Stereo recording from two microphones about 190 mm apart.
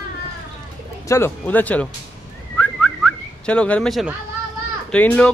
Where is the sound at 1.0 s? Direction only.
15° left (ahead or behind).